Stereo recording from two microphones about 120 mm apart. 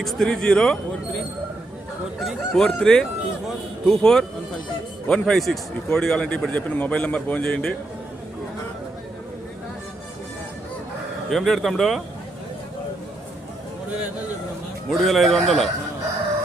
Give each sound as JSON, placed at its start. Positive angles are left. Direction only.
{"t": 0.0, "sound": "speech", "side_deg": 0}
{"t": 2.2, "sound": "speech", "side_deg": 5}
{"t": 11.3, "sound": "speech", "side_deg": 0}
{"t": 14.8, "sound": "speech", "side_deg": 0}